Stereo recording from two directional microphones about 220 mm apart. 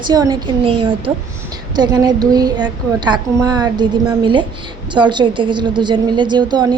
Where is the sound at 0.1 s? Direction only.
20° right (ahead or behind).